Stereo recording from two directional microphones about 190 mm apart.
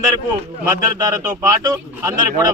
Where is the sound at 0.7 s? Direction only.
15° right (ahead or behind).